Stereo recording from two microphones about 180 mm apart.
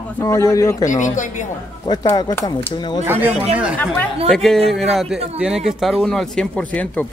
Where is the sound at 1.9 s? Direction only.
20° left (ahead or behind).